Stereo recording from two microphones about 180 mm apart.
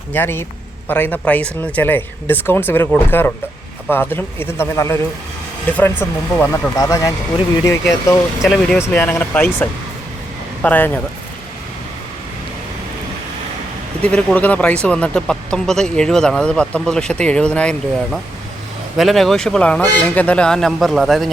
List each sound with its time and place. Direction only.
0.1 s speech: 10° left (ahead or behind)
8.4 s speech: 5° left (ahead or behind)
14.0 s speech: 5° left (ahead or behind)